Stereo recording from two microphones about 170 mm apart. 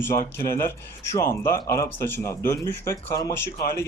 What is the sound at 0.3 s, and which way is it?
A man's voice, 15° left (ahead or behind).